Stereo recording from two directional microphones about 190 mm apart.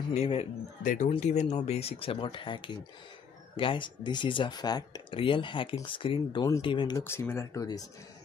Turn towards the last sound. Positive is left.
turn(degrees=20)  # may be behind; listen again after turning